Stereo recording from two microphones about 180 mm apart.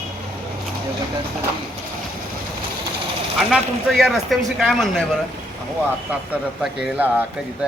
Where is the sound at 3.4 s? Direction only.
Centre (ahead or behind).